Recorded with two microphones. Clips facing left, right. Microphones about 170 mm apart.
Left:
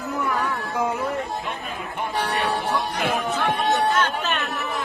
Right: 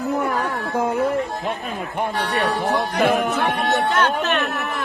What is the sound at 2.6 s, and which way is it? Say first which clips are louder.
Speech: right 5 dB; 60° right (ahead or behind).